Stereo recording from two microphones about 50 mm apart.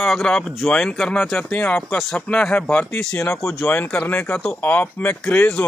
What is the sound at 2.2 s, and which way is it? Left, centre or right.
Speech, centre.